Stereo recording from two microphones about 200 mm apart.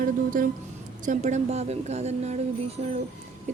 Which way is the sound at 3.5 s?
35° right (ahead or behind).